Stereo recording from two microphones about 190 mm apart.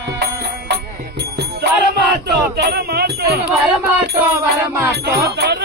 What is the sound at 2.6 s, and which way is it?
Speech, 55° right (ahead or behind).